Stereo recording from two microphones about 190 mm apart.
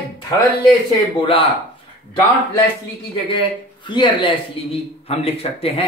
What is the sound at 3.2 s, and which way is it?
Speech, 25° left (ahead or behind).